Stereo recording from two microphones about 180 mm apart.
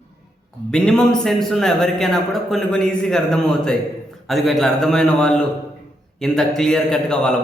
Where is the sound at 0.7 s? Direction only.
5° left (ahead or behind).